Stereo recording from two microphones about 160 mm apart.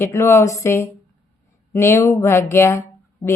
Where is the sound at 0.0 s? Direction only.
15° left (ahead or behind).